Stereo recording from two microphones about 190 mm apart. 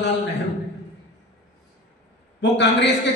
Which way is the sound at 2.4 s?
70° left (ahead or behind).